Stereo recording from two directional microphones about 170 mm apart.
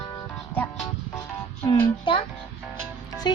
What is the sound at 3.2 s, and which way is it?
Speech, 25° left (ahead or behind).